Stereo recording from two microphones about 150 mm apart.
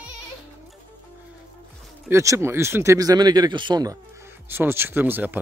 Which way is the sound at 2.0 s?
20° right (ahead or behind).